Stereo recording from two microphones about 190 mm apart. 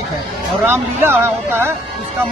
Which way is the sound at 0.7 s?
15° right (ahead or behind).